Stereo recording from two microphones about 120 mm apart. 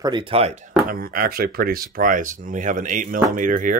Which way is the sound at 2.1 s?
90° right.